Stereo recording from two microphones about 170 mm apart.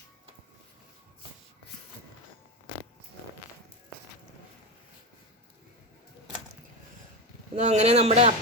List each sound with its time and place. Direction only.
7.5 s speech: 40° right (ahead or behind)